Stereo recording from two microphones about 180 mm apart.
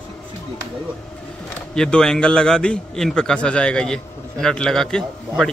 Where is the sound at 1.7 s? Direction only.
5° left (ahead or behind).